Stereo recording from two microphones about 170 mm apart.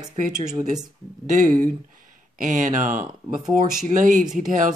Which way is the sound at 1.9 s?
50° right (ahead or behind).